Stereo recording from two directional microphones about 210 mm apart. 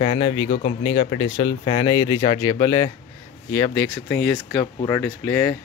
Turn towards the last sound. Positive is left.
turn(degrees=5)  # may be behind; listen again after turning